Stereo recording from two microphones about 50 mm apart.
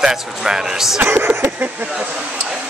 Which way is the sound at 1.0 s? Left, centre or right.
Right.